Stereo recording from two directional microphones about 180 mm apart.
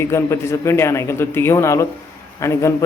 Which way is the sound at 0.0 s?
15° left (ahead or behind).